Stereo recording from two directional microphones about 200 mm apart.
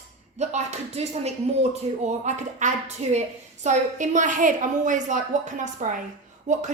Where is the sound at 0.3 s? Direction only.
35° right (ahead or behind).